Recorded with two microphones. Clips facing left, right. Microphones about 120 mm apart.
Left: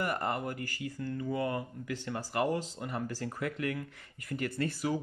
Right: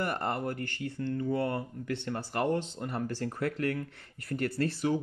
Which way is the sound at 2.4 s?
5° left (ahead or behind).